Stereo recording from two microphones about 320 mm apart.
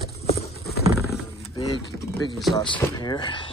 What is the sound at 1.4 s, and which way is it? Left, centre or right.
Speech, centre.